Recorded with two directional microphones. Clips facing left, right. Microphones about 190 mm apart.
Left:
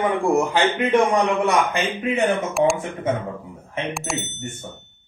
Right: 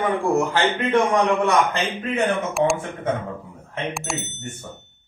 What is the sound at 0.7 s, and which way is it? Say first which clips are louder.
Speech: left 2 dB; 15° left (ahead or behind).